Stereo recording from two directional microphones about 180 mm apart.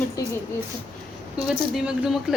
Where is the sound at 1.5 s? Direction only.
5° right (ahead or behind).